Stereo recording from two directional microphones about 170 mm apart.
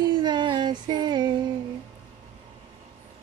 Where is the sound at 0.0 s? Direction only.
25° right (ahead or behind).